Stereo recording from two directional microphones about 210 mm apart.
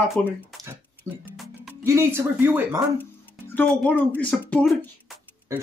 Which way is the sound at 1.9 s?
10° right (ahead or behind).